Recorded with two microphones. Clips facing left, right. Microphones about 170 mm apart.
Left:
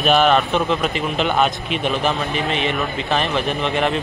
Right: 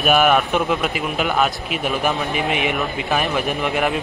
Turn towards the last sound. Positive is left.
turn(degrees=-10)  # may be behind; listen again after turning